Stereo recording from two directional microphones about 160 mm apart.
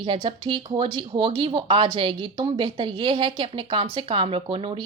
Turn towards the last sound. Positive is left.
turn(degrees=-30)  # may be behind; listen again after turning